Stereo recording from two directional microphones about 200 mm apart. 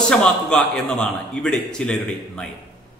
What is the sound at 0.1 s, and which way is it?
A man's voice, 5° left (ahead or behind).